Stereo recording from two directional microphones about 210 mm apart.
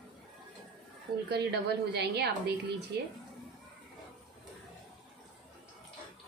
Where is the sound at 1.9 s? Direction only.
50° right (ahead or behind).